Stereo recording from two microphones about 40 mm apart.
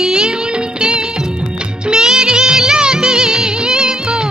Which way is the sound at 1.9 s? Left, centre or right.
Centre.